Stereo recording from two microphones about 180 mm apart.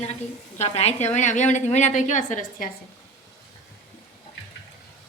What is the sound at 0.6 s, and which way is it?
A woman's voice, 35° left (ahead or behind).